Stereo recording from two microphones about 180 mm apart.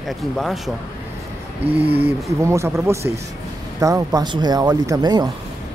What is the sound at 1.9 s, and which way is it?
Speech, 10° right (ahead or behind).